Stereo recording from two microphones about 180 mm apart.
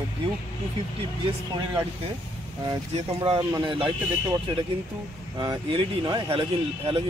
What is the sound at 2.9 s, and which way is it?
Speech, 30° right (ahead or behind).